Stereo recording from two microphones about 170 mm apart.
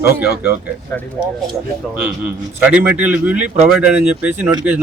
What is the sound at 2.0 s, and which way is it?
Speech, 10° right (ahead or behind).